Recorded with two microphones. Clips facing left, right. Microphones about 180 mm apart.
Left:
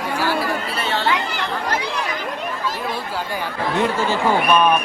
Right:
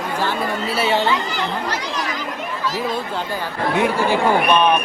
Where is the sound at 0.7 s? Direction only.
10° right (ahead or behind).